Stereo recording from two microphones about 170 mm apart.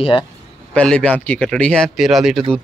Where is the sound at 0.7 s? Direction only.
5° left (ahead or behind).